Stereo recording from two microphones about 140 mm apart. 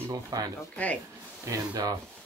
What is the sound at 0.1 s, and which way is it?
Speech, 25° right (ahead or behind).